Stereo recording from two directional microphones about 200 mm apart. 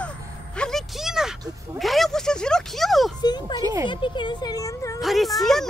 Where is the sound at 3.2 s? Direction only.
20° left (ahead or behind).